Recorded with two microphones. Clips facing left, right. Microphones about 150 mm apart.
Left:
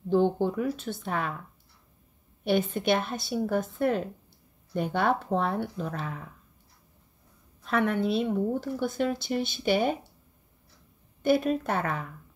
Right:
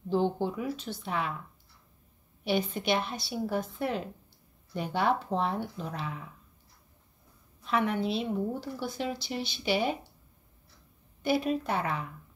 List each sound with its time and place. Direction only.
0.1 s speech: 50° left (ahead or behind)
2.4 s speech: 50° left (ahead or behind)
7.6 s speech: 50° left (ahead or behind)
11.2 s speech: 50° left (ahead or behind)